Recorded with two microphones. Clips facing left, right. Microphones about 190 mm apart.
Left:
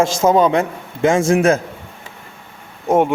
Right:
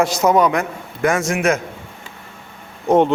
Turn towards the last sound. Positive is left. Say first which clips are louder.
# right 1 dB
turn(degrees=10)  # may be behind; listen again after turning